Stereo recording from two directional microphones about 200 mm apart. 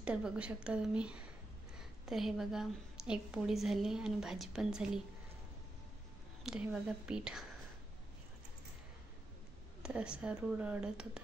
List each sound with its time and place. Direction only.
0.0 s a woman's voice: 5° right (ahead or behind)
6.4 s a woman's voice: 5° right (ahead or behind)
9.8 s a woman's voice: 5° right (ahead or behind)